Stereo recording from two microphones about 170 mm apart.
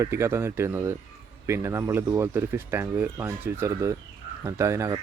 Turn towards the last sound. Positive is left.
turn(degrees=-20)  # may be behind; listen again after turning